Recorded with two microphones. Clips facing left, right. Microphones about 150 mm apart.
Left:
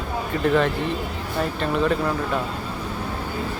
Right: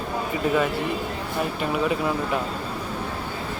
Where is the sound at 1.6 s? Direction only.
10° right (ahead or behind).